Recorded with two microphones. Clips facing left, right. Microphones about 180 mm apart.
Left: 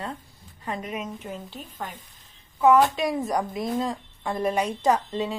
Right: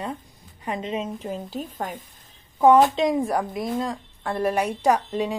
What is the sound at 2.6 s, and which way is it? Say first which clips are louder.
Speech: right 3 dB; 30° right (ahead or behind).